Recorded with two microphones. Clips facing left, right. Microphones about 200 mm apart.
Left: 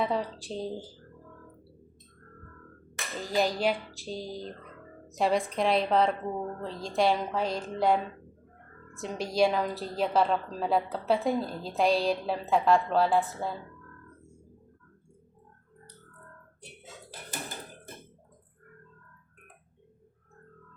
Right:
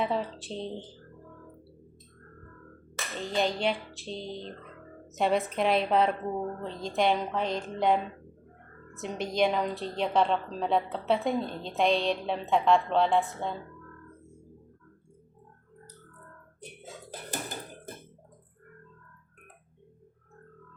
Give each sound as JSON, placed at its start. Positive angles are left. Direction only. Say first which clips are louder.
{"t": 0.0, "sound": "a woman's voice", "louder": "even", "side_deg": 0}
{"t": 3.2, "sound": "a woman's voice", "louder": "left 1 dB", "side_deg": 5}